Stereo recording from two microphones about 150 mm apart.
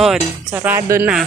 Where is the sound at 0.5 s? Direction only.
15° right (ahead or behind).